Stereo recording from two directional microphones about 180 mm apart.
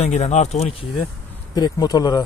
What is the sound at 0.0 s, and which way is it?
Speech, 40° left (ahead or behind).